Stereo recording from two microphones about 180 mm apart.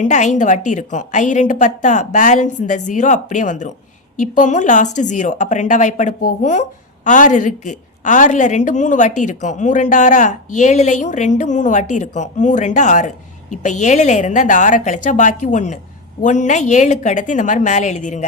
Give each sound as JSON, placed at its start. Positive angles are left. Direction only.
{"t": 0.0, "sound": "a woman's voice", "side_deg": 40}